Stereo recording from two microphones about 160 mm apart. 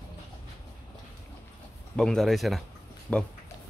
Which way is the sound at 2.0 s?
5° left (ahead or behind).